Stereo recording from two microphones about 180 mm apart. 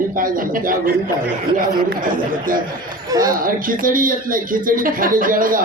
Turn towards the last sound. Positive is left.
turn(degrees=-50)  # may be behind; listen again after turning